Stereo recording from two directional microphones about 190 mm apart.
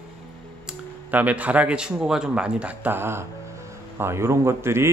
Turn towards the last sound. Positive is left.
turn(degrees=-15)  # may be behind; listen again after turning